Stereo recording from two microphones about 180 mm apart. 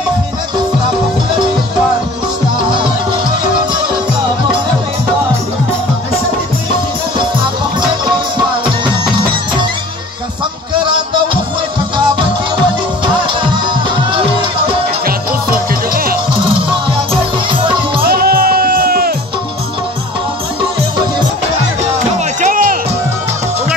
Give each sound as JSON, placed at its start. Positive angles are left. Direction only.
{"t": 7.8, "sound": "music", "side_deg": -25}
{"t": 15.9, "sound": "music", "side_deg": -55}
{"t": 17.1, "sound": "music", "side_deg": -30}
{"t": 18.0, "sound": "music", "side_deg": -55}
{"t": 22.4, "sound": "music", "side_deg": -50}